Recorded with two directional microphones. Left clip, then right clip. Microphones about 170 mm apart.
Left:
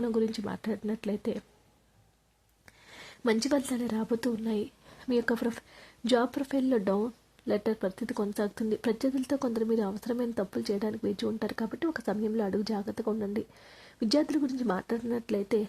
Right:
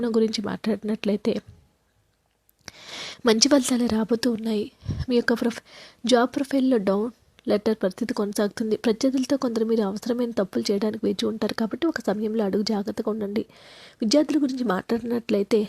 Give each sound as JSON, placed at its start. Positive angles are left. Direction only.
{"t": 0.0, "sound": "a woman's voice", "side_deg": -25}
{"t": 2.6, "sound": "a woman's voice", "side_deg": -35}